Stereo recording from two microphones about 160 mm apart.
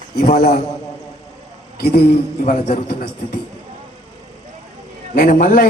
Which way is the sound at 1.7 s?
70° left (ahead or behind).